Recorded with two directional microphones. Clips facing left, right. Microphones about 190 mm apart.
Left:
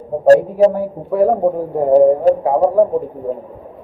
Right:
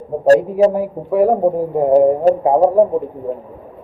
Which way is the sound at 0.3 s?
10° right (ahead or behind).